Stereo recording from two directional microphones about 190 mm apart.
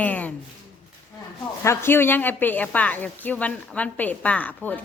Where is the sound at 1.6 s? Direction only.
10° left (ahead or behind).